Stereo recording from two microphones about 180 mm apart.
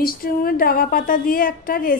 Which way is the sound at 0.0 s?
55° left (ahead or behind).